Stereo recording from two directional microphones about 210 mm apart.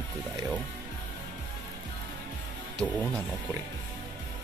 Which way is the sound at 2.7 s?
Centre (ahead or behind).